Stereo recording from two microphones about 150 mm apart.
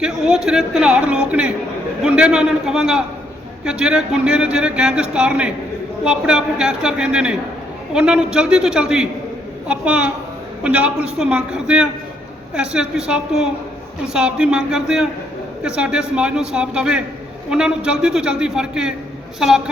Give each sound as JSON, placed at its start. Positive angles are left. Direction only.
{"t": 0.0, "sound": "a man's voice", "side_deg": -5}